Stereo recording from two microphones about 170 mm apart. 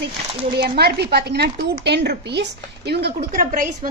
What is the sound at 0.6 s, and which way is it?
A woman's voice, 70° right (ahead or behind).